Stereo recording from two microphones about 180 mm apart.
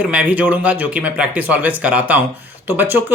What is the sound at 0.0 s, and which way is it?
Speech, 5° right (ahead or behind).